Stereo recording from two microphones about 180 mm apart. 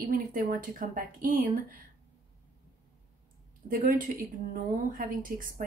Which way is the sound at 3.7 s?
50° right (ahead or behind).